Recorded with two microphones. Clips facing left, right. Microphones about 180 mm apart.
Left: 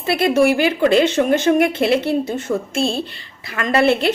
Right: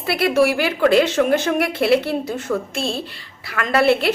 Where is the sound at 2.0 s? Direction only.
20° left (ahead or behind).